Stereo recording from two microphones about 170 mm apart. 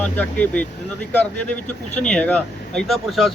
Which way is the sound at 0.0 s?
10° left (ahead or behind).